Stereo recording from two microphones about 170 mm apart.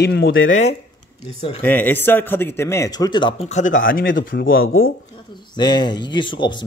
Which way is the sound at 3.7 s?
90° left.